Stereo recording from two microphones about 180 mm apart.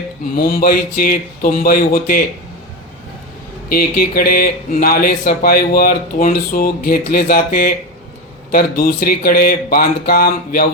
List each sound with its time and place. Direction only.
0.3 s speech: 55° left (ahead or behind)
3.7 s speech: 55° left (ahead or behind)